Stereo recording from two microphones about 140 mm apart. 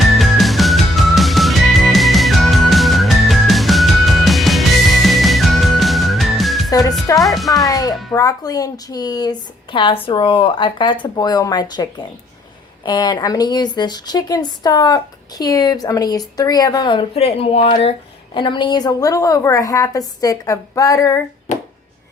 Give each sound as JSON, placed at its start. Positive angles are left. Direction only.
{"t": 0.1, "sound": "music", "side_deg": 0}
{"t": 6.7, "sound": "music", "side_deg": 25}
{"t": 7.2, "sound": "speech", "side_deg": 0}
{"t": 7.5, "sound": "music", "side_deg": 25}
{"t": 8.1, "sound": "speech", "side_deg": 25}
{"t": 18.3, "sound": "speech", "side_deg": 35}
{"t": 21.5, "sound": "music", "side_deg": 55}